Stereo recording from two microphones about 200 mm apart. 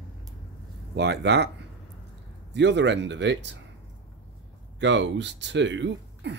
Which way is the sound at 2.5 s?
60° right (ahead or behind).